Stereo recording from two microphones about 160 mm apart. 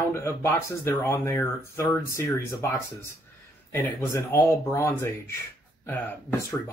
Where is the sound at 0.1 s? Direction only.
15° left (ahead or behind).